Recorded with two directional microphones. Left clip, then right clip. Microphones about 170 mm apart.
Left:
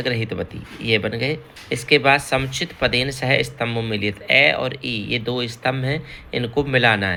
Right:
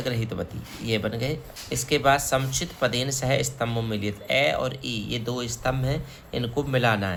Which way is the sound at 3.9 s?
15° left (ahead or behind).